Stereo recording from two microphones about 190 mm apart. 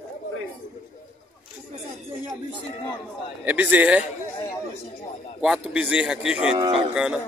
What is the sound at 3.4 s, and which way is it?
Speech, 10° right (ahead or behind).